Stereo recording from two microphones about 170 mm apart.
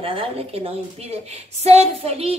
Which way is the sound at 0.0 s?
35° right (ahead or behind).